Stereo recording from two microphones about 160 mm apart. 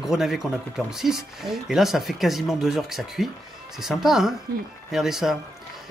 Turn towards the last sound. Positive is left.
turn(degrees=0)  # may be behind; listen again after turning